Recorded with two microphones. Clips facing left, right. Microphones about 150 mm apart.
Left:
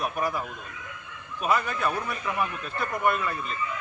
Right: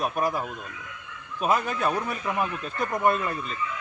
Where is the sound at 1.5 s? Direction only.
40° right (ahead or behind).